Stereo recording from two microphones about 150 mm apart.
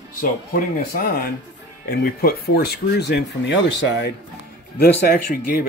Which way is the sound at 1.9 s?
90° left.